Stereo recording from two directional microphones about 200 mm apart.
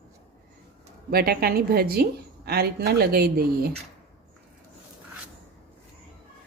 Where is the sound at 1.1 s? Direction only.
50° right (ahead or behind).